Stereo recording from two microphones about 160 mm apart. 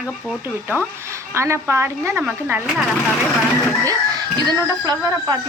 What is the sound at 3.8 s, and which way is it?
Speech, 25° right (ahead or behind).